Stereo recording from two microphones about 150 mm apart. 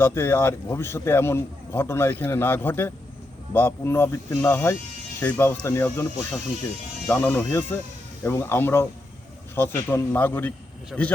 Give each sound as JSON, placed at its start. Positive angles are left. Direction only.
{"t": 0.0, "sound": "a man's voice", "side_deg": 15}
{"t": 7.1, "sound": "a man's voice", "side_deg": 15}
{"t": 10.9, "sound": "speech", "side_deg": 0}